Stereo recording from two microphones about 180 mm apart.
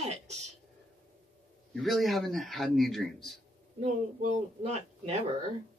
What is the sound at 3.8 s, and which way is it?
Speech, 35° right (ahead or behind).